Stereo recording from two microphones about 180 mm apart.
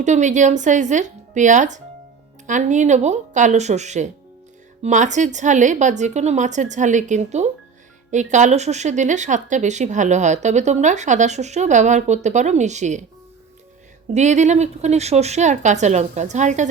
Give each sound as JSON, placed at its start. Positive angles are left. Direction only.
{"t": 0.0, "sound": "speech", "side_deg": -40}
{"t": 14.1, "sound": "speech", "side_deg": -40}